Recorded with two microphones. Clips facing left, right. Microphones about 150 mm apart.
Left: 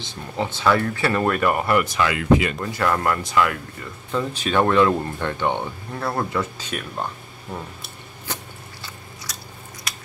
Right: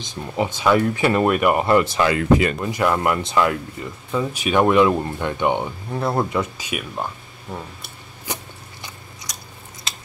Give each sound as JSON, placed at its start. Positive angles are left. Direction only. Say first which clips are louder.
{"t": 0.0, "sound": "speech", "louder": "right 3 dB", "side_deg": -15}
{"t": 2.6, "sound": "speech", "louder": "right 2 dB", "side_deg": -15}
{"t": 4.1, "sound": "speech", "louder": "right 2 dB", "side_deg": -10}
{"t": 8.3, "sound": "a sound", "louder": "right 2 dB", "side_deg": -15}